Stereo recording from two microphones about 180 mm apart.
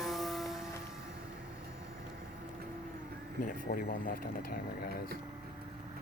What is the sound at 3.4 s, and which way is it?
Speech, 50° left (ahead or behind).